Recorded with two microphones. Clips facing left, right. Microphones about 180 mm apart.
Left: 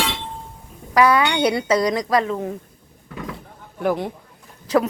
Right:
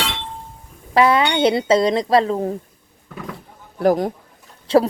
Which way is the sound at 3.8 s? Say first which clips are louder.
Right 5 dB; 40° right (ahead or behind).